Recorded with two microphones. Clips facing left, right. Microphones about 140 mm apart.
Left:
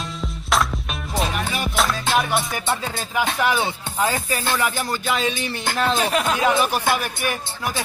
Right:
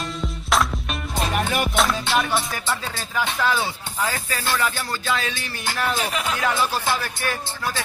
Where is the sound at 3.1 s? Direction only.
15° left (ahead or behind).